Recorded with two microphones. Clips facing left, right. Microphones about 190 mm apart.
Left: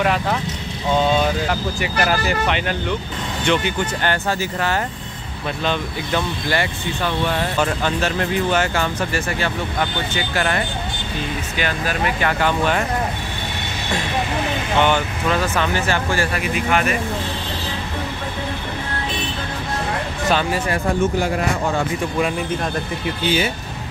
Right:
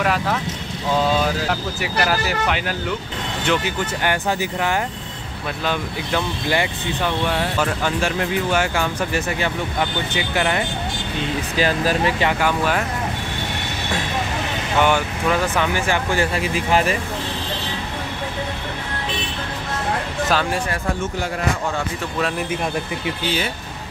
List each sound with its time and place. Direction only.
0.0 s speech: centre (ahead or behind); by 10.6 s 15° right (ahead or behind)
11.5 s speech: 35° right (ahead or behind)
12.3 s speech: 10° right (ahead or behind)
14.8 s speech: 10° right (ahead or behind)
16.3 s speech: 30° right (ahead or behind)
20.2 s speech: centre (ahead or behind)